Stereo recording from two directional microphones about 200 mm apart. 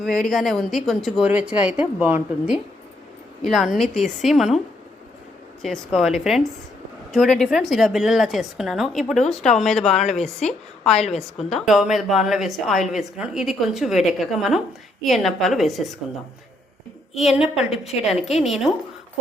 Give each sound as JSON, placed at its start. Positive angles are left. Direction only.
{"t": 0.0, "sound": "a woman's voice", "side_deg": 0}
{"t": 6.0, "sound": "a woman's voice", "side_deg": 0}
{"t": 10.9, "sound": "a woman's voice", "side_deg": 30}
{"t": 11.5, "sound": "a woman's voice", "side_deg": 0}
{"t": 17.2, "sound": "a woman's voice", "side_deg": 0}